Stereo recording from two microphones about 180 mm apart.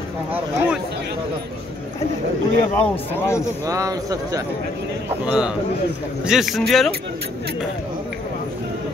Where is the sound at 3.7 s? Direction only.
20° right (ahead or behind).